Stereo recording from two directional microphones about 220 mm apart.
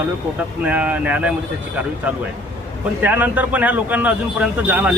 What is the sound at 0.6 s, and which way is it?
Speech, 5° right (ahead or behind).